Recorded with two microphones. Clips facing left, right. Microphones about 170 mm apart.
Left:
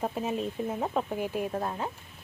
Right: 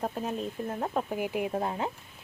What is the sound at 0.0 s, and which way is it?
A woman's voice, 5° left (ahead or behind).